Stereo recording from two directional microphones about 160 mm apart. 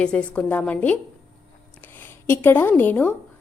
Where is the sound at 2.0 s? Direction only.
15° left (ahead or behind).